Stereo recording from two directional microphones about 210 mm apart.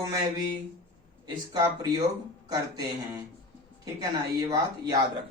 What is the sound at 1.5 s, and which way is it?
Speech, 20° right (ahead or behind).